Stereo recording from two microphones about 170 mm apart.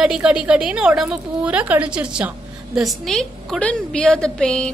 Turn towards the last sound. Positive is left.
turn(degrees=5)  # may be behind; listen again after turning